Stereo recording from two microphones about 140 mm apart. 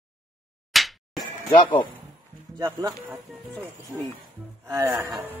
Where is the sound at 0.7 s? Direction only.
Centre (ahead or behind).